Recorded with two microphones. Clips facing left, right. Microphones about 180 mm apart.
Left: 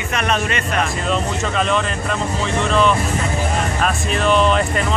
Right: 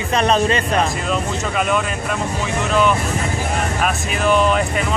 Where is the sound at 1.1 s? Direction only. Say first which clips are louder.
Left 1 dB; 5° right (ahead or behind).